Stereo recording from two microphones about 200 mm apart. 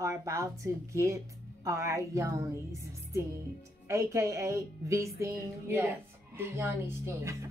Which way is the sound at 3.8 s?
15° right (ahead or behind).